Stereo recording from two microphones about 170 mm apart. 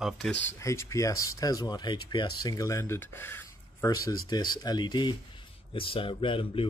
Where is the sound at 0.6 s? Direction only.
15° left (ahead or behind).